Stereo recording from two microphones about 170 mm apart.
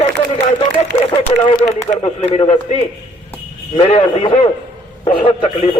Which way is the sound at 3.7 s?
40° left (ahead or behind).